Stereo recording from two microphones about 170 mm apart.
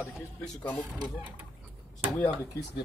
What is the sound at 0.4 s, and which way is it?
Speech, 5° left (ahead or behind).